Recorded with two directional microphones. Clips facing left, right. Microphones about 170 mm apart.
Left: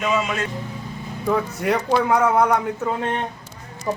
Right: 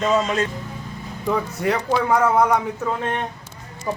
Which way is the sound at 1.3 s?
Centre (ahead or behind).